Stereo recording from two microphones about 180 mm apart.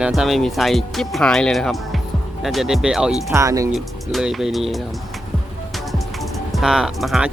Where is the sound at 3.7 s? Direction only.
Centre (ahead or behind).